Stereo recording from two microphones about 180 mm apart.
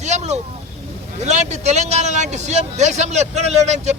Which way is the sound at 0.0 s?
40° right (ahead or behind).